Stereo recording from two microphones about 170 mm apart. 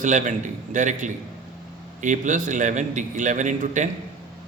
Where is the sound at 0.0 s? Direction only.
45° right (ahead or behind).